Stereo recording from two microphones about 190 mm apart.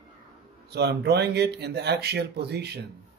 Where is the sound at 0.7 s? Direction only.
60° right (ahead or behind).